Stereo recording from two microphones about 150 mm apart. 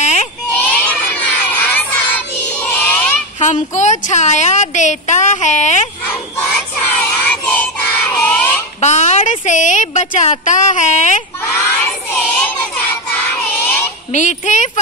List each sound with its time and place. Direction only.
0.0 s a sound: 50° left (ahead or behind)
0.5 s child singing: 10° left (ahead or behind)
3.3 s a woman's voice: 55° left (ahead or behind)
6.0 s child singing: 15° left (ahead or behind)
8.8 s a woman's voice: 50° left (ahead or behind)
11.5 s child singing: 15° left (ahead or behind)
14.1 s a child's voice: 55° left (ahead or behind)